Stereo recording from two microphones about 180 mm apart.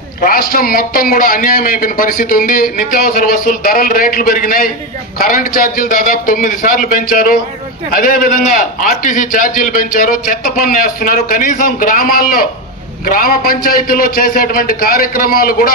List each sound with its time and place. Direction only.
0.2 s a man's voice: 55° left (ahead or behind)